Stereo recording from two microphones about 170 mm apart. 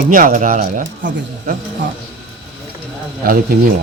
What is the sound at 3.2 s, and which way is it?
Speech, 55° right (ahead or behind).